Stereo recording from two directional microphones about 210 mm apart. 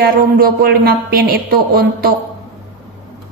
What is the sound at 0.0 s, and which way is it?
A woman's voice, 45° right (ahead or behind).